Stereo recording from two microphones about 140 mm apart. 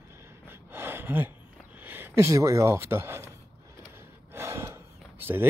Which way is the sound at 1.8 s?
15° right (ahead or behind).